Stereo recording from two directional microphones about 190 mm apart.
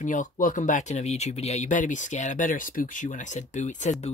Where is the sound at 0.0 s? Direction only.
45° left (ahead or behind).